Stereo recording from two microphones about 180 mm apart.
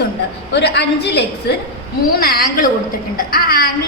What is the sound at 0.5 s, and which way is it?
Speech, 70° left (ahead or behind).